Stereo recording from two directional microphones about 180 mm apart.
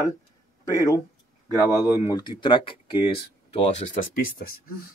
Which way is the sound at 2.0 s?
25° left (ahead or behind).